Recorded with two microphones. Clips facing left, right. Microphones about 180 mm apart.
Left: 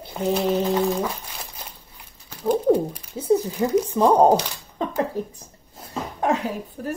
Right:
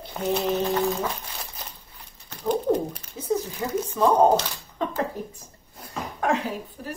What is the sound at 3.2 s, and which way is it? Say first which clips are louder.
Speech: left 7 dB; 30° left (ahead or behind).